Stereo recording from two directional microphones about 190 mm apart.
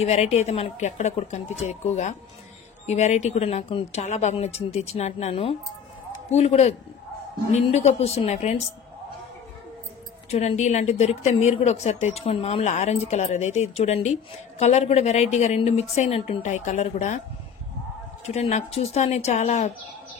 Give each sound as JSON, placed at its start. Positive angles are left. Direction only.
{"t": 0.0, "sound": "speech", "side_deg": 35}
{"t": 10.3, "sound": "speech", "side_deg": 35}
{"t": 18.2, "sound": "speech", "side_deg": 35}